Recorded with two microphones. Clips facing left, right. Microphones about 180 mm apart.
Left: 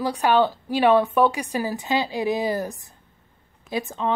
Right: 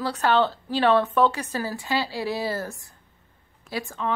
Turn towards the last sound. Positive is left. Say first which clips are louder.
# left 3 dB
turn(degrees=20)  # may be behind; listen again after turning